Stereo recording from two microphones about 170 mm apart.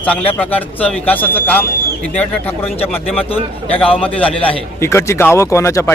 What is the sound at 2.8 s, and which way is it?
A man's voice, 35° left (ahead or behind).